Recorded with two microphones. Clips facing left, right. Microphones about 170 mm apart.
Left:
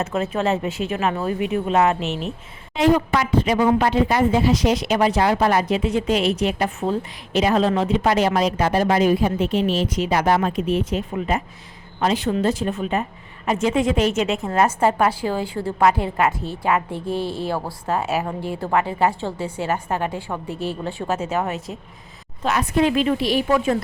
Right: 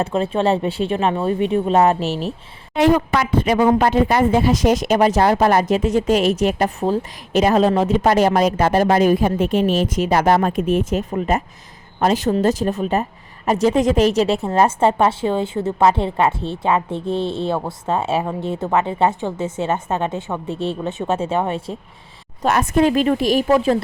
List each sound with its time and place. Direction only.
0.0 s speech: 30° right (ahead or behind)
2.7 s a woman's voice: 60° right (ahead or behind); by 21.8 s 30° right (ahead or behind)
22.4 s a woman's voice: 45° right (ahead or behind)
23.5 s speech: 35° right (ahead or behind)